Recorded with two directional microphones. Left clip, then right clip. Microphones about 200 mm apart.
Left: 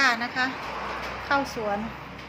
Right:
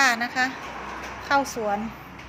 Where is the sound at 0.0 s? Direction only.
40° right (ahead or behind).